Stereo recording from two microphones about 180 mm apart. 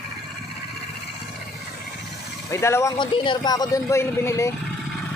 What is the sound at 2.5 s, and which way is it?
A man's voice, 15° left (ahead or behind).